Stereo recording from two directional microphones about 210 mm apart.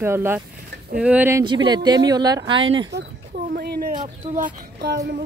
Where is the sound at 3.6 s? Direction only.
45° right (ahead or behind).